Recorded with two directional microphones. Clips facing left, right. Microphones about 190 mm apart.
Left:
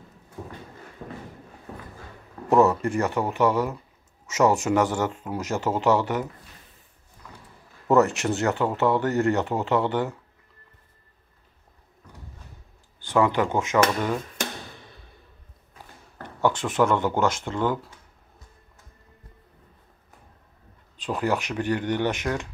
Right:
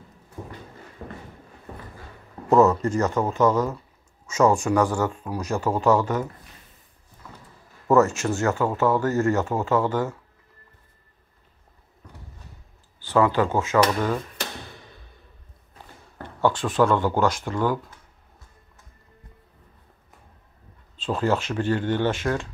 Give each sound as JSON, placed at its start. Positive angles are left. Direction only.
{"t": 2.5, "sound": "speech", "side_deg": 15}
{"t": 7.9, "sound": "speech", "side_deg": 20}
{"t": 13.1, "sound": "speech", "side_deg": 15}
{"t": 16.4, "sound": "speech", "side_deg": 20}
{"t": 20.9, "sound": "speech", "side_deg": 15}